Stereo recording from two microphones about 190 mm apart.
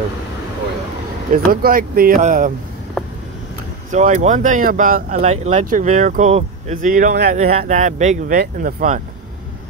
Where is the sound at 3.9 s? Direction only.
40° right (ahead or behind).